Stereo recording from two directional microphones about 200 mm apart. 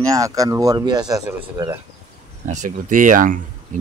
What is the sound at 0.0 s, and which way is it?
Speech, 15° right (ahead or behind).